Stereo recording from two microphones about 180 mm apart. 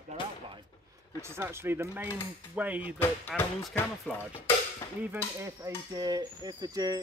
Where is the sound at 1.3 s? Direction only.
15° right (ahead or behind).